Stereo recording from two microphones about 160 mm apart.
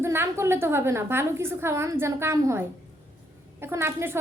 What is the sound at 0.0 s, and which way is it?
A child's voice, 15° right (ahead or behind).